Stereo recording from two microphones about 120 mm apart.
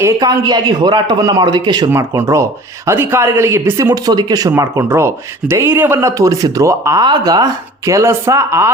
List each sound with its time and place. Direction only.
0.0 s a man's voice: 35° right (ahead or behind)
1.9 s a man's voice: 20° right (ahead or behind)